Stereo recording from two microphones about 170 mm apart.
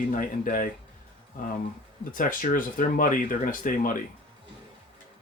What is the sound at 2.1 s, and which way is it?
Speech, 55° left (ahead or behind).